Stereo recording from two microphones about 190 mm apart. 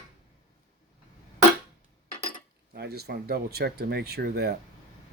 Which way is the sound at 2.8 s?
60° right (ahead or behind).